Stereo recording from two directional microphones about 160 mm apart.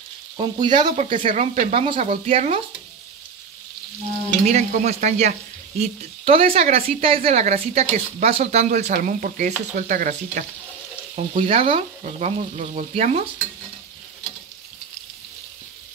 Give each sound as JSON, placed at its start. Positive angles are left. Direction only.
{"t": 0.4, "sound": "frying", "side_deg": -30}
{"t": 1.0, "sound": "speech", "side_deg": -30}
{"t": 1.3, "sound": "speech", "side_deg": -45}
{"t": 4.5, "sound": "speech", "side_deg": -45}
{"t": 11.3, "sound": "speech", "side_deg": -35}